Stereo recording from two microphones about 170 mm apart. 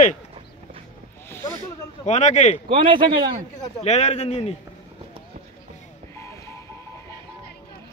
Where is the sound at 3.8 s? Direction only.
40° left (ahead or behind).